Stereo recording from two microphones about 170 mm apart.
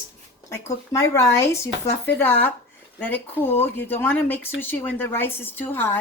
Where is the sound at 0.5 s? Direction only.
20° left (ahead or behind).